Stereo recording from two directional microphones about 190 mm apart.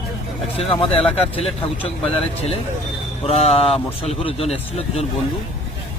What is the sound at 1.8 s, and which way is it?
A man's voice, 30° left (ahead or behind).